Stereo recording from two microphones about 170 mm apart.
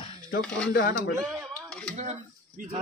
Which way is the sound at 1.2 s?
5° left (ahead or behind).